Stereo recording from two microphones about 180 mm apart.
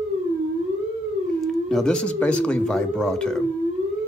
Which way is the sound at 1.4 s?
Centre (ahead or behind).